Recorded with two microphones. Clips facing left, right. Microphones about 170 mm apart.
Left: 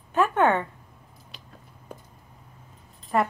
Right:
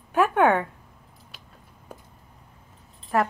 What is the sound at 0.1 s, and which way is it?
Speech, 10° right (ahead or behind).